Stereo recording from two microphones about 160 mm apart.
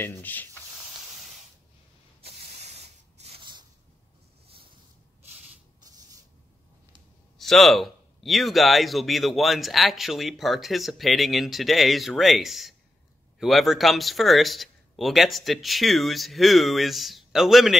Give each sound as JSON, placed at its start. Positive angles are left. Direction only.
{"t": 0.0, "sound": "speech", "side_deg": 10}
{"t": 2.2, "sound": "sanding", "side_deg": -40}
{"t": 7.3, "sound": "speech", "side_deg": 0}